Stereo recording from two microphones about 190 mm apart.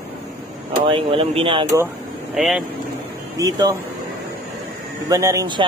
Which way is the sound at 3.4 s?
20° right (ahead or behind).